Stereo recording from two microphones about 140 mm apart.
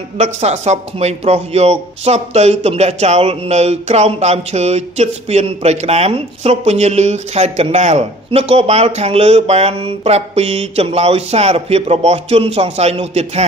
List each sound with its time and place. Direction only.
0.2 s a man's voice: 50° right (ahead or behind)